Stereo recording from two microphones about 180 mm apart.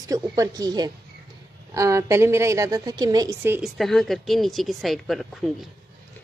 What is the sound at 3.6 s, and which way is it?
Speech, centre (ahead or behind).